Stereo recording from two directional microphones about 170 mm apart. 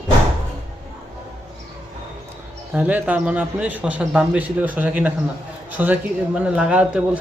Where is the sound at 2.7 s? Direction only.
10° right (ahead or behind).